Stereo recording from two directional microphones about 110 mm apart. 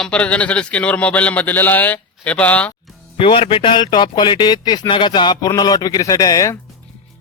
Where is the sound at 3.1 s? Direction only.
55° left (ahead or behind); by 6.5 s 30° left (ahead or behind).